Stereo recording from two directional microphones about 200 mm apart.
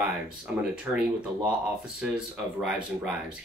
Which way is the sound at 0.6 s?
5° right (ahead or behind).